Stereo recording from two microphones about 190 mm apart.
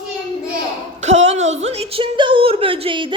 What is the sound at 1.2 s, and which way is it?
A woman's voice, 35° right (ahead or behind).